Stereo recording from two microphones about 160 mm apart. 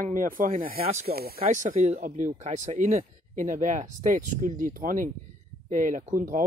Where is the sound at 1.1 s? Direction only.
75° right (ahead or behind).